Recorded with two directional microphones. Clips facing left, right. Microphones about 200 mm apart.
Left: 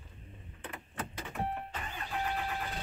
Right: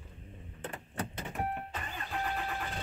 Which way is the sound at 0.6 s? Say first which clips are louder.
Right 3 dB; 40° right (ahead or behind).